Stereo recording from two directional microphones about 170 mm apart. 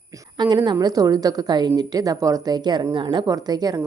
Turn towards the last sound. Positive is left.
turn(degrees=-20)  # may be behind; listen again after turning